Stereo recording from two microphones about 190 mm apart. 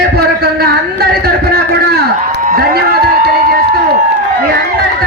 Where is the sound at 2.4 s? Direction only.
50° right (ahead or behind).